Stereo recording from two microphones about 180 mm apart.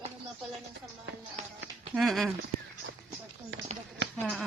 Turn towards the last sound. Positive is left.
turn(degrees=5)  # may be behind; listen again after turning